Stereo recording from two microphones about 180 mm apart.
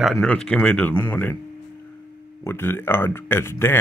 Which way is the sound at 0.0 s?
Centre (ahead or behind).